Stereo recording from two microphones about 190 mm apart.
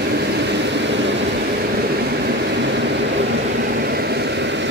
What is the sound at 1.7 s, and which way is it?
Vehicle, 55° right (ahead or behind).